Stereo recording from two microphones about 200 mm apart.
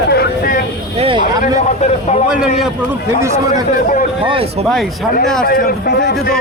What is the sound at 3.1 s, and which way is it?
Speech, 15° right (ahead or behind).